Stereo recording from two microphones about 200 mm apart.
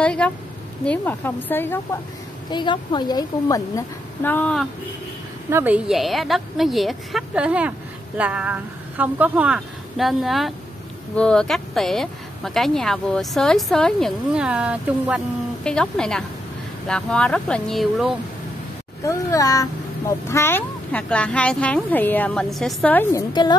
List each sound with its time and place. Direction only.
0.0 s a woman's voice: 5° left (ahead or behind)
2.5 s speech: 25° left (ahead or behind); by 4.6 s 5° left (ahead or behind)
5.5 s a woman's voice: 10° right (ahead or behind)
19.0 s speech: 15° left (ahead or behind)